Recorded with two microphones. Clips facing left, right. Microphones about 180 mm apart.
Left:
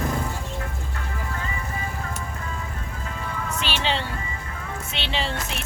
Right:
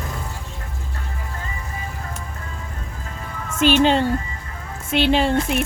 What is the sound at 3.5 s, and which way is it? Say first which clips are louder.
Speech: right 12 dB; 50° right (ahead or behind).